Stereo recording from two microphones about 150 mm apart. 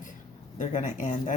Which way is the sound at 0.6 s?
55° left (ahead or behind).